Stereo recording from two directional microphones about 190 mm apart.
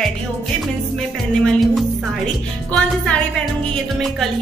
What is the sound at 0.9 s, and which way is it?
Music, centre (ahead or behind).